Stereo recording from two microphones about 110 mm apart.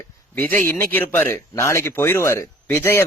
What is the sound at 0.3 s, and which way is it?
Speech, 15° left (ahead or behind).